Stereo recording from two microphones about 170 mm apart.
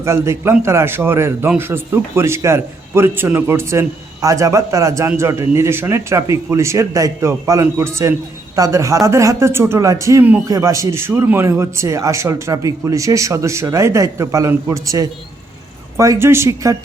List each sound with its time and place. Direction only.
0.0 s a man's voice: 15° right (ahead or behind)